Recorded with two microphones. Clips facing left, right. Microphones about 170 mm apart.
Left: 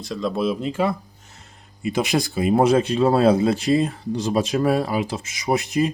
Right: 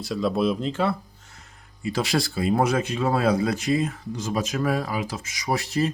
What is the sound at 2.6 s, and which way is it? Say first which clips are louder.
Speech: left 6 dB; 30° left (ahead or behind).